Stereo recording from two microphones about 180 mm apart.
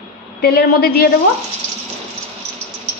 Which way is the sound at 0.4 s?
60° left (ahead or behind).